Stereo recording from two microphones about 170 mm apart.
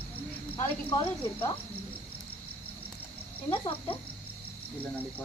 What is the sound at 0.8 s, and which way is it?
Cricket, 30° left (ahead or behind).